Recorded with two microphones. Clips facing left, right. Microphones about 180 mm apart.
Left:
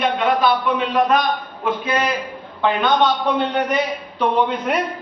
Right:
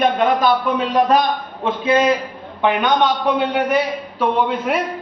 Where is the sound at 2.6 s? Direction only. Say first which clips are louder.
Right 1 dB; 15° right (ahead or behind).